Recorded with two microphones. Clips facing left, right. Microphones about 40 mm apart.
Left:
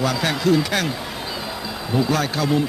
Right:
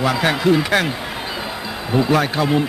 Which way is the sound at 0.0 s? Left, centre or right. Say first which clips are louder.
Right 3 dB; right.